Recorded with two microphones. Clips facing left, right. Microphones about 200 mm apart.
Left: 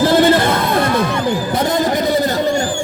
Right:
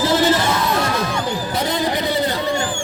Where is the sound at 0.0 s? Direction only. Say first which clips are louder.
Left 5 dB; 55° left (ahead or behind).